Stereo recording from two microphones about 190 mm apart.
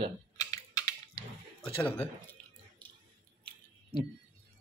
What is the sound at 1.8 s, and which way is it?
Speech, 5° left (ahead or behind).